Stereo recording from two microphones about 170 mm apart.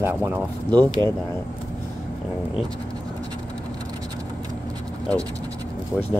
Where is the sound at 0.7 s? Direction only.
25° right (ahead or behind).